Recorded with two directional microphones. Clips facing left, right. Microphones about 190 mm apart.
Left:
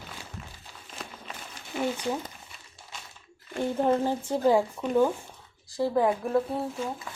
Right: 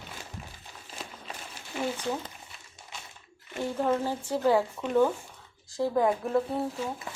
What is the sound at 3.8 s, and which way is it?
Speech, 20° left (ahead or behind).